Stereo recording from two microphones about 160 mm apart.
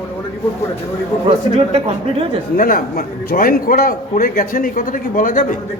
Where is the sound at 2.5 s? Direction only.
60° left (ahead or behind).